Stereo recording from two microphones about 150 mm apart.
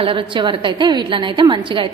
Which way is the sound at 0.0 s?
35° right (ahead or behind).